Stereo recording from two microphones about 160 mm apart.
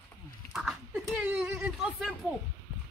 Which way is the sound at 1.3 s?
15° right (ahead or behind).